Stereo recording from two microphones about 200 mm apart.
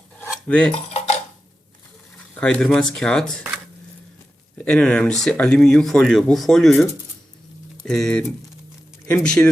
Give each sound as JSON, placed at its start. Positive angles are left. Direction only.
{"t": 0.2, "sound": "cutlery", "side_deg": 5}
{"t": 0.9, "sound": "dishes", "side_deg": 35}
{"t": 2.3, "sound": "speech", "side_deg": 5}
{"t": 4.5, "sound": "speech", "side_deg": 5}
{"t": 7.9, "sound": "speech", "side_deg": 5}